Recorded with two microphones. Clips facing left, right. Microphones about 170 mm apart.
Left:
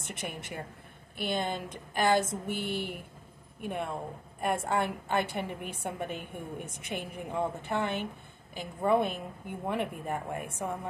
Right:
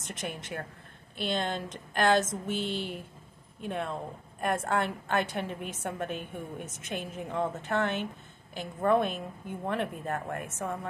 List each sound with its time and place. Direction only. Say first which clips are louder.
0.0 s a woman's voice: right 1 dB; 10° left (ahead or behind)